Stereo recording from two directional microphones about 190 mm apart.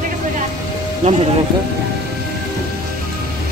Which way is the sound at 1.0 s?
40° right (ahead or behind).